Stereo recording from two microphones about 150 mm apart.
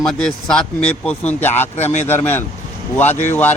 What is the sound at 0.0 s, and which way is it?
Speech, 5° left (ahead or behind).